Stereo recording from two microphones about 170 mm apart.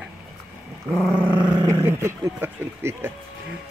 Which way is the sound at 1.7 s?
15° right (ahead or behind).